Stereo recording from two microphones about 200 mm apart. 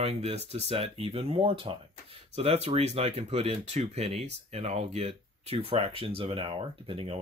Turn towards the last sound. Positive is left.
turn(degrees=-25)  # may be behind; listen again after turning